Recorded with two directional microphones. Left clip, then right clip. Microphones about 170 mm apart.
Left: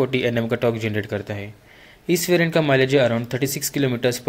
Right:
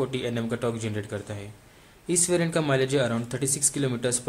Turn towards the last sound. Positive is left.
turn(degrees=15)  # may be behind; listen again after turning